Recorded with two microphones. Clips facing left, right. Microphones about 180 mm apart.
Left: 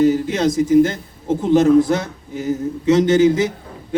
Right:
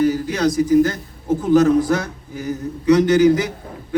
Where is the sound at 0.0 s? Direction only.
25° left (ahead or behind).